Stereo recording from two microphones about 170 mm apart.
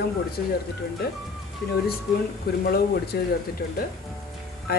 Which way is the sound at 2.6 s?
65° left (ahead or behind).